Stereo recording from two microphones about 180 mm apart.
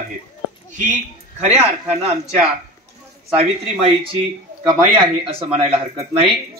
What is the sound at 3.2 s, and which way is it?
Speech, 5° right (ahead or behind).